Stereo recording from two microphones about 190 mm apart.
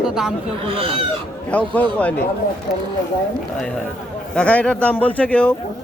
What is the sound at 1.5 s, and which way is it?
Speech, 10° left (ahead or behind).